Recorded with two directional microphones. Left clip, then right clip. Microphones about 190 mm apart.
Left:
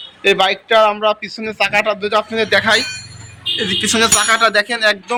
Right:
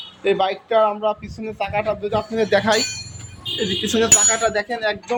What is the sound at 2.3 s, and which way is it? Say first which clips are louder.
Speech: left 2 dB; 15° right (ahead or behind).